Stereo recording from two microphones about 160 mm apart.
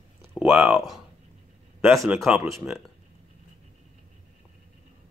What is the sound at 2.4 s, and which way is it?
Speech, 20° right (ahead or behind).